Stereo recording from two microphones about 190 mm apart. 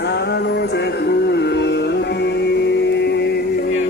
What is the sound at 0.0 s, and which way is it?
Music, 65° left (ahead or behind).